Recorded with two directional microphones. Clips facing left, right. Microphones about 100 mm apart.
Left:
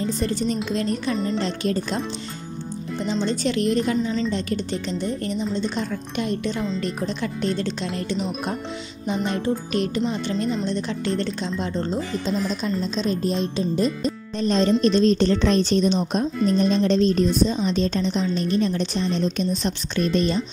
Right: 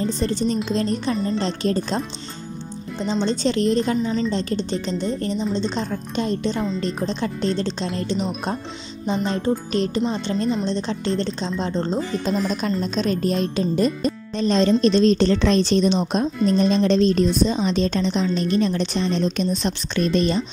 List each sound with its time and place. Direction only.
0.0 s a woman's voice: 30° right (ahead or behind)
3.0 s a woman's voice: 25° right (ahead or behind)
12.3 s speech: 55° right (ahead or behind)
14.4 s a woman's voice: 90° right